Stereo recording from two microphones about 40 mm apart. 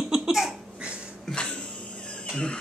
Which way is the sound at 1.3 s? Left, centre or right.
Left.